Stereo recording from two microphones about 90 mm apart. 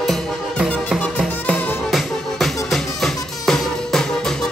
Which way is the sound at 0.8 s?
15° left (ahead or behind).